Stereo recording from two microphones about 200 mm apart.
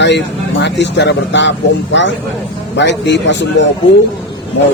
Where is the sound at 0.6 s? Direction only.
60° left (ahead or behind).